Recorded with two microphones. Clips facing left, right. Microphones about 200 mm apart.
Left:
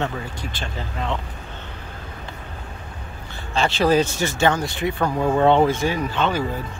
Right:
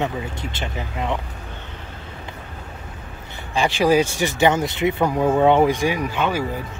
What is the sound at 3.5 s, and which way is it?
Speech, 15° right (ahead or behind).